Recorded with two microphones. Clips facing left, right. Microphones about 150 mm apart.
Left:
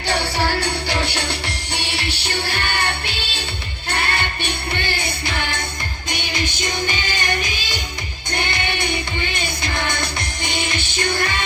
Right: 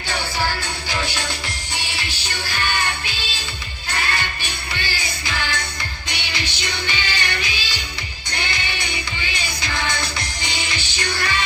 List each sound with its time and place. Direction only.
0.1 s music: 70° left (ahead or behind); by 11.4 s 50° left (ahead or behind)